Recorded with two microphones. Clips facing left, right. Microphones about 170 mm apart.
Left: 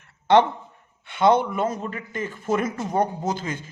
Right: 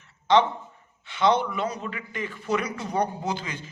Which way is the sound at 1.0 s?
55° left (ahead or behind).